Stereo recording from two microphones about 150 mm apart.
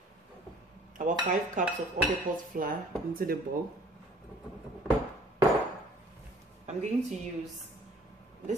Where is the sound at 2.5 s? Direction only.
70° right (ahead or behind).